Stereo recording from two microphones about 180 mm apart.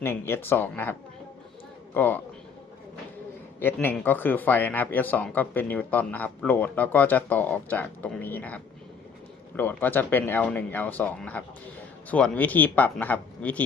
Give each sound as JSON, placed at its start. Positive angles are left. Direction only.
{"t": 0.0, "sound": "a man's voice", "side_deg": 10}
{"t": 3.6, "sound": "speech", "side_deg": 10}